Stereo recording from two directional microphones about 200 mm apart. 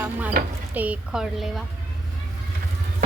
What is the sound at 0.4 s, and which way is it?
Speech, 45° right (ahead or behind).